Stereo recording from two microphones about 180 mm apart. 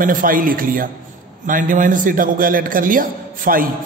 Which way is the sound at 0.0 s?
50° right (ahead or behind).